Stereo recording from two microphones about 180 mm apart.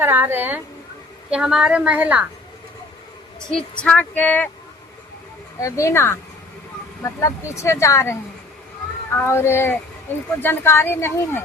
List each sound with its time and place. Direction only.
0.0 s a woman's voice: 10° right (ahead or behind)
3.5 s speech: 5° left (ahead or behind)
5.5 s speech: 15° left (ahead or behind)
9.1 s speech: 15° left (ahead or behind)